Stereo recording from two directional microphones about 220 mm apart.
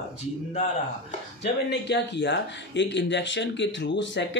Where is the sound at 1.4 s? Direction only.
50° left (ahead or behind).